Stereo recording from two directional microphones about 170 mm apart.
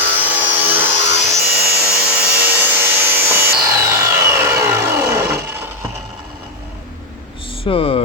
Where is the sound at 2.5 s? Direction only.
10° right (ahead or behind).